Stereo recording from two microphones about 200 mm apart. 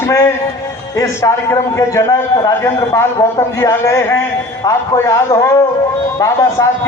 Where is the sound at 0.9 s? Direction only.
15° left (ahead or behind).